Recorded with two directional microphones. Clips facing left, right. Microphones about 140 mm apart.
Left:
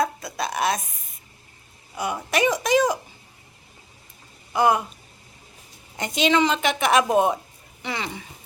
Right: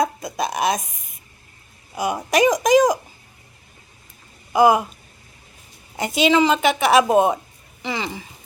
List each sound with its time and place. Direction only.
0.0 s a sound: 15° right (ahead or behind)
2.0 s speech: 15° right (ahead or behind)
4.5 s speech: 10° right (ahead or behind)
6.0 s a woman's voice: 5° right (ahead or behind)